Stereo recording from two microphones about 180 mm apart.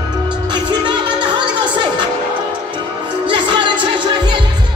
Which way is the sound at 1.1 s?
25° right (ahead or behind).